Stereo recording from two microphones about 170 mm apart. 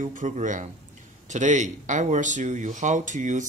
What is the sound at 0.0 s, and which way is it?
Speech, 50° right (ahead or behind).